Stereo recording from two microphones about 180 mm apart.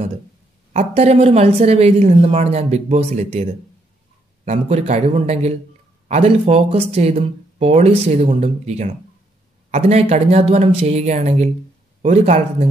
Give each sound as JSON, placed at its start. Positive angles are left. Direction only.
{"t": 0.7, "sound": "speech", "side_deg": -35}
{"t": 4.5, "sound": "speech", "side_deg": -40}